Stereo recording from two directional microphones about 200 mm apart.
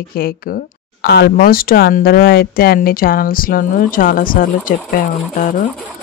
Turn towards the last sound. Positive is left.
turn(degrees=40)  # may be behind; listen again after turning